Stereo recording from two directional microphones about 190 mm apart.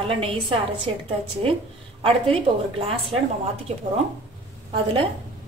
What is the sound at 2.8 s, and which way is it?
Speech, 30° right (ahead or behind).